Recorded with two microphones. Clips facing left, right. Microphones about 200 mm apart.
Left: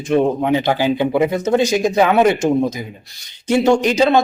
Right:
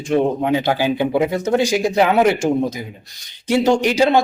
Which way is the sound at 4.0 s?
10° right (ahead or behind).